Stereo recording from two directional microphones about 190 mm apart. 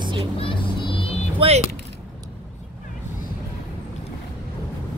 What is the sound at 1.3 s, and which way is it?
Speech, 30° right (ahead or behind).